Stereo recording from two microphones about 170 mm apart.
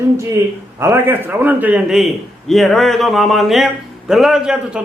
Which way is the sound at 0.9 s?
10° right (ahead or behind).